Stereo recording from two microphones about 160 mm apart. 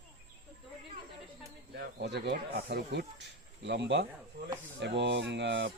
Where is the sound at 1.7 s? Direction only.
90° right.